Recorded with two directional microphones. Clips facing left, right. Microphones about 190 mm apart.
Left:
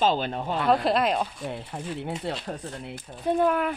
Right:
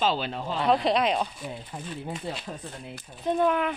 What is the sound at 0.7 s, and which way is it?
Speech, centre (ahead or behind).